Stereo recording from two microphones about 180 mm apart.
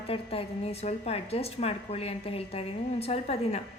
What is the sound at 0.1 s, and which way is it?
A woman's voice, 30° left (ahead or behind).